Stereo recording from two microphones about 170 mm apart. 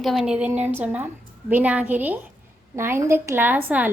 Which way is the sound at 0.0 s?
Centre (ahead or behind).